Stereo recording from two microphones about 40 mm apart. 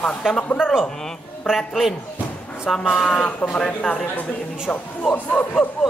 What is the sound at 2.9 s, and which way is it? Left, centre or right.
Speech, centre.